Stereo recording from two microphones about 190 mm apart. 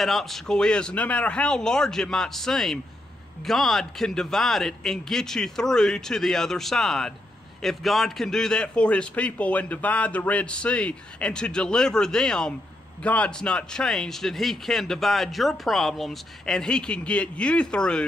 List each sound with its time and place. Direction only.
0.0 s a man's voice: centre (ahead or behind)